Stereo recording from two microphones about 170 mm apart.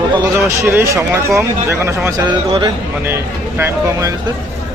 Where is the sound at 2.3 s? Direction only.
30° right (ahead or behind).